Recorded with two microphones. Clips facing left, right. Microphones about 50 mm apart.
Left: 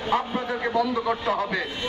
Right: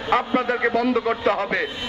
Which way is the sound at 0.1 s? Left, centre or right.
Right.